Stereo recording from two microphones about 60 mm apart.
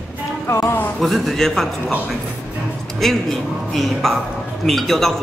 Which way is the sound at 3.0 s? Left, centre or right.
Centre.